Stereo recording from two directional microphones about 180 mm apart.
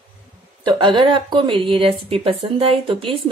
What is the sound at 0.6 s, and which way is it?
A woman's voice, 25° right (ahead or behind).